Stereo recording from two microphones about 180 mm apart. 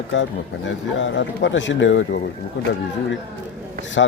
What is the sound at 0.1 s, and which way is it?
Speech, 90° left.